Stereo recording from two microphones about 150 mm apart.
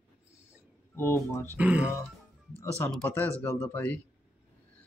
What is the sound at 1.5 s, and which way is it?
Speech, 10° right (ahead or behind).